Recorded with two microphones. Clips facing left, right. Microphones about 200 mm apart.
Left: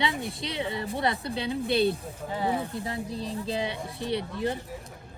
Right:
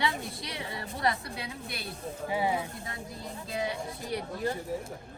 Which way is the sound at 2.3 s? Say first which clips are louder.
Left 1 dB; 10° right (ahead or behind).